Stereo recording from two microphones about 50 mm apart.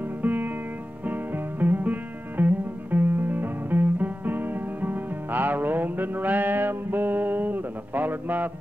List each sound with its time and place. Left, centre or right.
0.2 s music: right